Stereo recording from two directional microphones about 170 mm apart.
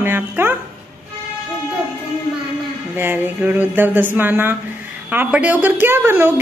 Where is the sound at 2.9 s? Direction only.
10° right (ahead or behind).